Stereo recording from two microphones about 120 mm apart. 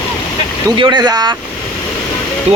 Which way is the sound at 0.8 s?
35° right (ahead or behind).